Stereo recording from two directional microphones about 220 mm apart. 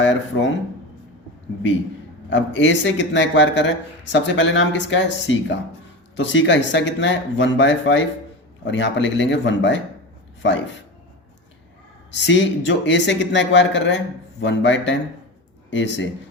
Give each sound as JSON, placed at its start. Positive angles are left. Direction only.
{"t": 0.0, "sound": "speech", "side_deg": 60}
{"t": 2.3, "sound": "speech", "side_deg": 55}
{"t": 12.1, "sound": "speech", "side_deg": 55}